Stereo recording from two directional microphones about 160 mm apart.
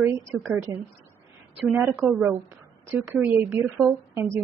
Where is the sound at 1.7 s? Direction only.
10° right (ahead or behind).